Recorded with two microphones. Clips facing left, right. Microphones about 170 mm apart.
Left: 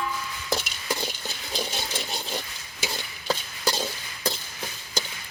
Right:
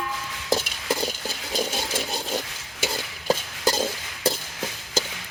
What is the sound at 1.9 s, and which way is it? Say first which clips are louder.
Ratchet: right 4 dB; 40° right (ahead or behind).